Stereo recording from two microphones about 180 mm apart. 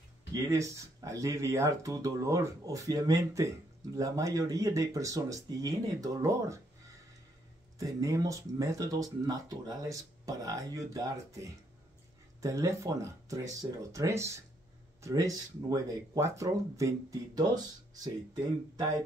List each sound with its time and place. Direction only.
0.3 s speech: 15° right (ahead or behind)
7.8 s speech: 20° right (ahead or behind)